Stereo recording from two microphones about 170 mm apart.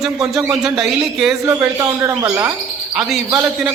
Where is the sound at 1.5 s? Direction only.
15° right (ahead or behind).